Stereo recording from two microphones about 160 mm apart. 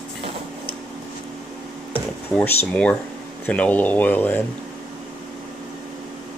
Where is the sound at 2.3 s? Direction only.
5° left (ahead or behind).